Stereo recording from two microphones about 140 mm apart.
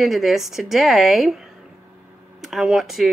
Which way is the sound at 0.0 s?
Centre (ahead or behind).